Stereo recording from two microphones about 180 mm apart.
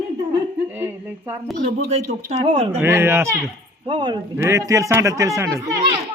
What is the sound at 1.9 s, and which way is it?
Speech, 40° right (ahead or behind).